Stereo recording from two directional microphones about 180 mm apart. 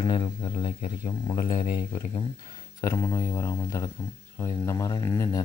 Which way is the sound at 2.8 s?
15° left (ahead or behind).